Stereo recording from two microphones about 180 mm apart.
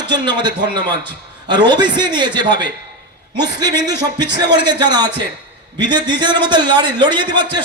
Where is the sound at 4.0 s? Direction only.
25° right (ahead or behind).